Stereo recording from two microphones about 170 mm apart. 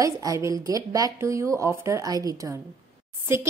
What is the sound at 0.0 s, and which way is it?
A woman's voice, 20° right (ahead or behind).